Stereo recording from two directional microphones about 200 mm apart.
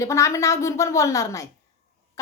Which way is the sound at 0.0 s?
15° left (ahead or behind).